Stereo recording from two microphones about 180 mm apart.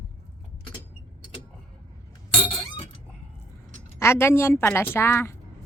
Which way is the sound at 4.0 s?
15° left (ahead or behind).